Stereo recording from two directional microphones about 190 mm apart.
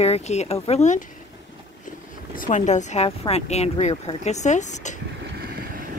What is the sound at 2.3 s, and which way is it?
Speech, 45° left (ahead or behind).